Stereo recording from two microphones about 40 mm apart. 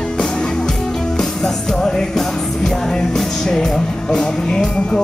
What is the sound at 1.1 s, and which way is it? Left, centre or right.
Music, centre.